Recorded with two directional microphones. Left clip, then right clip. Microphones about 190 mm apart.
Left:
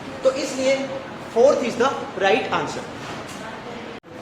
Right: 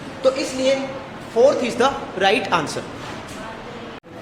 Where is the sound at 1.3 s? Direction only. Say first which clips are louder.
Right 1 dB; 40° right (ahead or behind).